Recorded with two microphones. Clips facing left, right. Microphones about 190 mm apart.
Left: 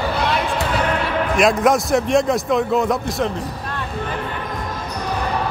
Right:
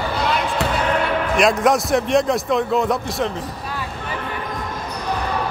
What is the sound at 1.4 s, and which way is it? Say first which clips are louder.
A man's voice: left 1 dB; centre (ahead or behind).